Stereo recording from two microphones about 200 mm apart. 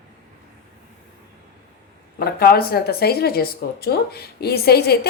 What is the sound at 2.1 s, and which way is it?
A woman's voice, 50° left (ahead or behind).